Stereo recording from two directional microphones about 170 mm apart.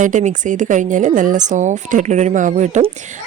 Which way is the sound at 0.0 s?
45° right (ahead or behind).